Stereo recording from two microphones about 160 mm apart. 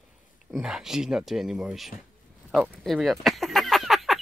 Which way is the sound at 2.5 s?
Centre (ahead or behind).